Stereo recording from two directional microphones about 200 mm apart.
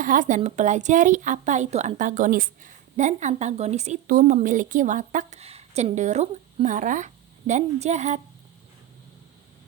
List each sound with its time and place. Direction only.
0.0 s a woman's voice: 40° right (ahead or behind)